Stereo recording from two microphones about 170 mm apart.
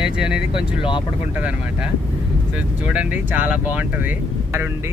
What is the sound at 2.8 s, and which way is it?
Speech, 5° right (ahead or behind).